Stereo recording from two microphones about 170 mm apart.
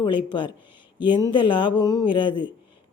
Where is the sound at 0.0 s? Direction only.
30° left (ahead or behind).